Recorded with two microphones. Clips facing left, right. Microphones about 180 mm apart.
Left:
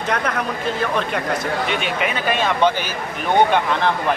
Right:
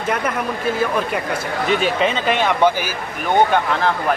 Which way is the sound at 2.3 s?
10° right (ahead or behind).